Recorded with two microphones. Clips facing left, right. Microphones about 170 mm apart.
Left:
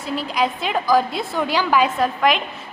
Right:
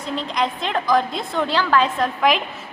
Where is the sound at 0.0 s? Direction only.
5° left (ahead or behind).